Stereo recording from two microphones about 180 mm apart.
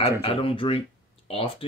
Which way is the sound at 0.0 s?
30° left (ahead or behind).